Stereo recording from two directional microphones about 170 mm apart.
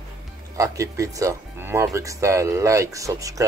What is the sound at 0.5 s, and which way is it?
Speech, 20° right (ahead or behind).